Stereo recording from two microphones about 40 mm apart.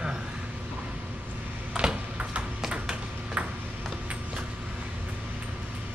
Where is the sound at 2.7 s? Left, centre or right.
Right.